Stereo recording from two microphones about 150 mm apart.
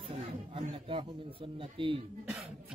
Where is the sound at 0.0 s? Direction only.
40° right (ahead or behind).